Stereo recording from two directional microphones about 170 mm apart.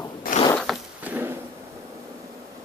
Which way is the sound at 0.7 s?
Centre (ahead or behind).